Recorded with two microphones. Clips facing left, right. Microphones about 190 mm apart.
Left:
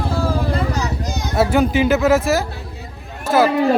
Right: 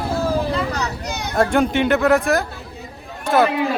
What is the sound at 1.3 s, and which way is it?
Speech, 5° left (ahead or behind).